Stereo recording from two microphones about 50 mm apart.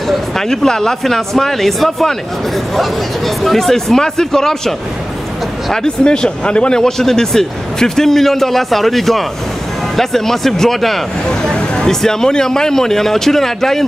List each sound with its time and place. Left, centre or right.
0.1 s speech: centre
6.8 s speech: centre
11.2 s speech: centre